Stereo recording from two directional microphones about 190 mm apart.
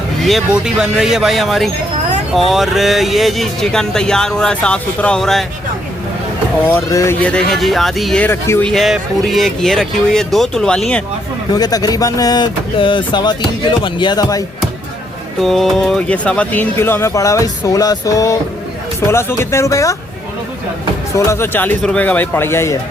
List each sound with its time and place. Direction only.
0.2 s speech: centre (ahead or behind)
6.7 s speech: 15° left (ahead or behind)
11.5 s speech: 20° left (ahead or behind)
15.4 s speech: centre (ahead or behind); by 20.0 s 15° left (ahead or behind)
21.2 s speech: 15° left (ahead or behind)